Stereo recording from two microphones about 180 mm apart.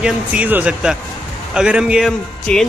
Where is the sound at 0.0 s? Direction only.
5° right (ahead or behind).